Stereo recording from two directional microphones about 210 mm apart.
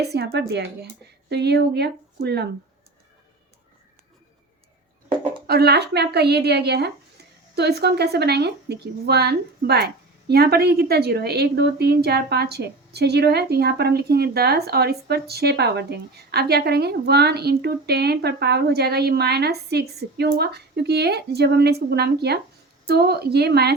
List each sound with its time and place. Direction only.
0.0 s speech: 50° right (ahead or behind)
5.5 s speech: 50° right (ahead or behind)